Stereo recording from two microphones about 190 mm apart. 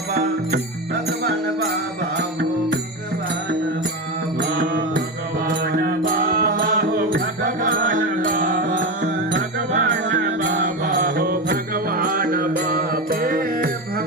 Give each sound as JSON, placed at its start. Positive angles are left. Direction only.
{"t": 5.5, "sound": "music", "side_deg": -55}
{"t": 10.5, "sound": "mantra", "side_deg": -45}